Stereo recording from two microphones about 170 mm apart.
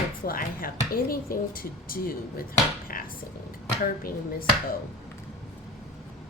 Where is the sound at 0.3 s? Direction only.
60° left (ahead or behind).